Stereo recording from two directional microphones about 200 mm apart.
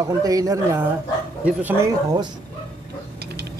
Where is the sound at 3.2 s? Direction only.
55° right (ahead or behind).